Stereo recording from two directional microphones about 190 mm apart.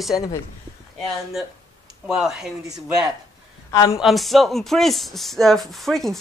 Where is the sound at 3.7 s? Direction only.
15° left (ahead or behind).